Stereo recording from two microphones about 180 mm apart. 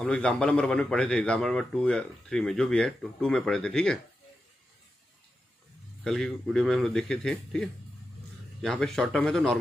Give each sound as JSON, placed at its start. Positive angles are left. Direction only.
{"t": 0.0, "sound": "a man's voice", "side_deg": 5}
{"t": 6.0, "sound": "a man's voice", "side_deg": 0}